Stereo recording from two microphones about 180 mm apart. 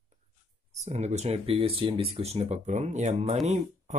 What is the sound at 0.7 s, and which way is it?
Speech, 40° right (ahead or behind).